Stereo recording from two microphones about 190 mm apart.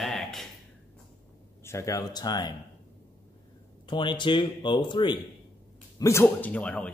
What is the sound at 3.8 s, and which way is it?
Speech, 25° left (ahead or behind).